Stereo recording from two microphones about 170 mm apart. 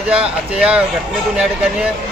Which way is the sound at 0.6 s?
5° right (ahead or behind).